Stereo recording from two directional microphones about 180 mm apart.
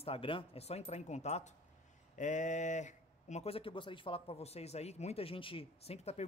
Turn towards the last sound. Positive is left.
turn(degrees=35)  # may be behind; listen again after turning